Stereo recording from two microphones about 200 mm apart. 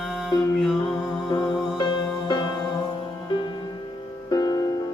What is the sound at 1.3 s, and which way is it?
Music, 25° left (ahead or behind).